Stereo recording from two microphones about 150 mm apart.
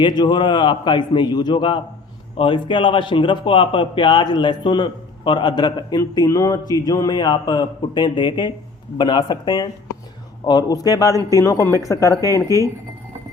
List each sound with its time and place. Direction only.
0.0 s a man's voice: 30° left (ahead or behind)